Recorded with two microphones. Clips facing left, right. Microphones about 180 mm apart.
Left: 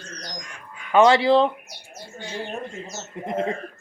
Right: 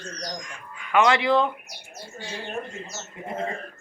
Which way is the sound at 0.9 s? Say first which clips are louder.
Left 4 dB; 30° left (ahead or behind).